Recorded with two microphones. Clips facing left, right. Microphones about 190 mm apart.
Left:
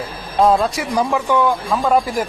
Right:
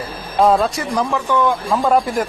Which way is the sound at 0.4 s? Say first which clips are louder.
Even; centre (ahead or behind).